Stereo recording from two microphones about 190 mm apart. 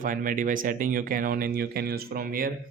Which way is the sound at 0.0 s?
45° right (ahead or behind).